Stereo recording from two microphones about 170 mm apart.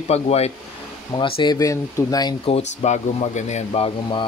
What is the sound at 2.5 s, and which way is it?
Speech, 40° left (ahead or behind).